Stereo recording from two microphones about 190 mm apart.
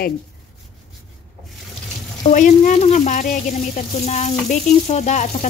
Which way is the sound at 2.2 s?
45° left (ahead or behind).